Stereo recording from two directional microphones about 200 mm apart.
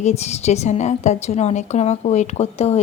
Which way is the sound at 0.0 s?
35° left (ahead or behind).